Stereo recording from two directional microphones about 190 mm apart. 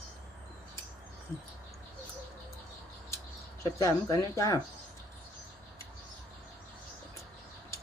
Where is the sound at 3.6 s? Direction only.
15° left (ahead or behind).